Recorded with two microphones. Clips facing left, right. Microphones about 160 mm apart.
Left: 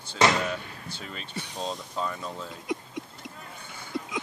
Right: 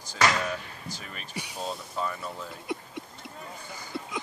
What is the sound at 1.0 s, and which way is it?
Speech, 90° left.